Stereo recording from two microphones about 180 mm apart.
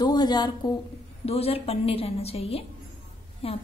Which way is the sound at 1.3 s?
35° left (ahead or behind).